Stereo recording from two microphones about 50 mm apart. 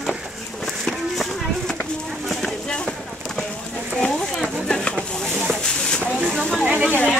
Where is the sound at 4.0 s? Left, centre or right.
Centre.